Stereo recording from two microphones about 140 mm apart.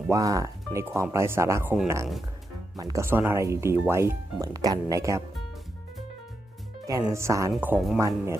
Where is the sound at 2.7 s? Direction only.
25° right (ahead or behind).